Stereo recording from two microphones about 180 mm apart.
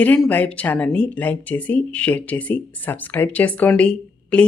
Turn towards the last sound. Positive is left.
turn(degrees=5)  # may be behind; listen again after turning